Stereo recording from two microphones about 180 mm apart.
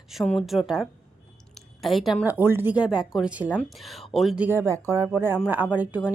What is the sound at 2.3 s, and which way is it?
A woman's voice, 10° right (ahead or behind).